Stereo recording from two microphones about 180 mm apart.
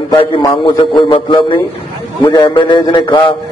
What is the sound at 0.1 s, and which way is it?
A man's voice, 25° left (ahead or behind).